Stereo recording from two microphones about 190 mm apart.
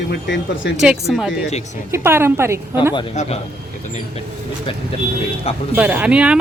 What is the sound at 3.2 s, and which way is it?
Speech, 40° left (ahead or behind).